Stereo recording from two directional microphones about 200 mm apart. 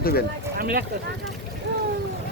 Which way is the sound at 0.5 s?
45° right (ahead or behind).